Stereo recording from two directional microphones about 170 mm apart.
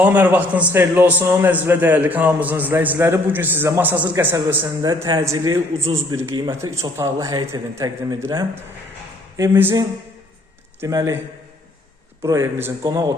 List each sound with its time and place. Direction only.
0.0 s a man's voice: 10° right (ahead or behind)
12.2 s a man's voice: 15° right (ahead or behind)